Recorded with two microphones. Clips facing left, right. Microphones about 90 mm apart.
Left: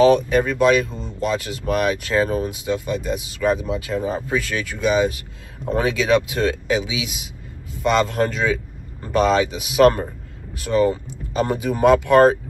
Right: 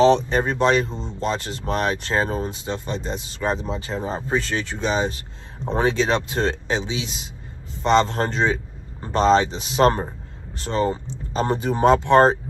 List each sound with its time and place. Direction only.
0.0 s speech: 30° right (ahead or behind)